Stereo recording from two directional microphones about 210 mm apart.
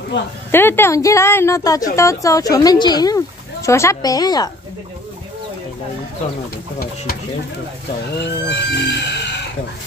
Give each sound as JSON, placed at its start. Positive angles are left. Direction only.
{"t": 0.1, "sound": "speech", "side_deg": 55}
{"t": 0.5, "sound": "speech", "side_deg": 10}
{"t": 8.2, "sound": "livestock", "side_deg": 55}